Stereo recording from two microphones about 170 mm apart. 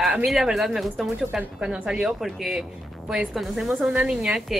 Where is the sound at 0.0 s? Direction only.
Centre (ahead or behind).